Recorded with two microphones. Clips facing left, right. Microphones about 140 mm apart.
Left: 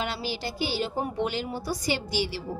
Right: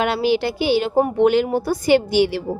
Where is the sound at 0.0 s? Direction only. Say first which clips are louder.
Right 13 dB; 65° right (ahead or behind).